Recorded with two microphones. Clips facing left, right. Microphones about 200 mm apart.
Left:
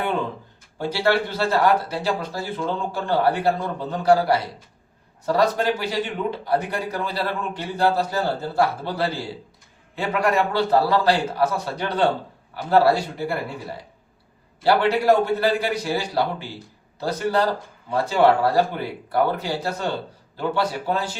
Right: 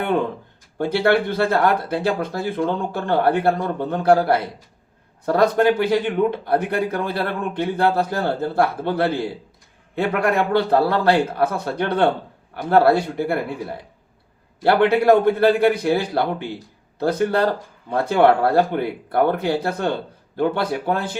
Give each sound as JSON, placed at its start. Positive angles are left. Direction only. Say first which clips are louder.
{"t": 0.8, "sound": "speech", "louder": "right 3 dB", "side_deg": -55}